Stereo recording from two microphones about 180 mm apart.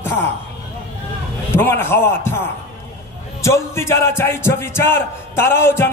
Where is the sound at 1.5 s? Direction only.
10° left (ahead or behind).